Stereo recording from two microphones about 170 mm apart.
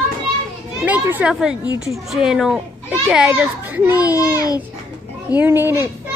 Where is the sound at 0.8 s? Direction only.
10° right (ahead or behind).